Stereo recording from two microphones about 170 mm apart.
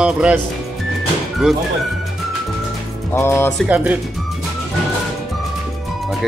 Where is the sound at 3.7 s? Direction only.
10° right (ahead or behind).